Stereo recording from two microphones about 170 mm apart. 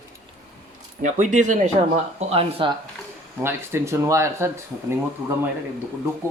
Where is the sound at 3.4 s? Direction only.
15° right (ahead or behind).